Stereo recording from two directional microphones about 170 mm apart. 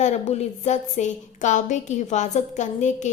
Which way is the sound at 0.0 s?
40° left (ahead or behind).